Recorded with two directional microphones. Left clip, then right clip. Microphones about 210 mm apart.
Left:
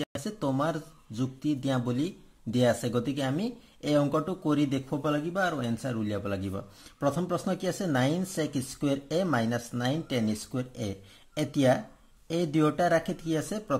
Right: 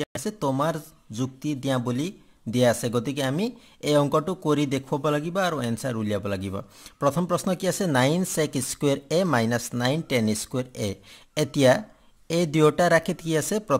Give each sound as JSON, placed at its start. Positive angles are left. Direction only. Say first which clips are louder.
{"t": 0.0, "sound": "speech", "louder": "right 5 dB", "side_deg": -30}